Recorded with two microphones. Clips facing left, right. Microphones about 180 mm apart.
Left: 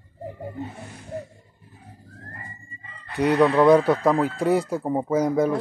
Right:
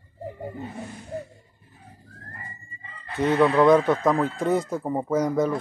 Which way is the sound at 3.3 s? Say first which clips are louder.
Left 1 dB; 5° left (ahead or behind).